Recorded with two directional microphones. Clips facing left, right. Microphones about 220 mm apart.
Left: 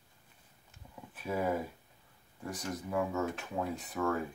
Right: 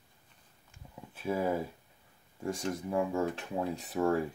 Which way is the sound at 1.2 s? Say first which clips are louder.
Right 2 dB; 25° right (ahead or behind).